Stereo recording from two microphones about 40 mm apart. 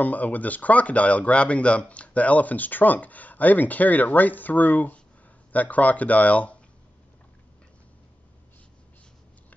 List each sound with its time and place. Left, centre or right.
0.0 s speech: left